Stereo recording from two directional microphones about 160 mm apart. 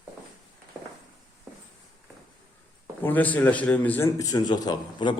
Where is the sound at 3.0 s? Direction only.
10° left (ahead or behind).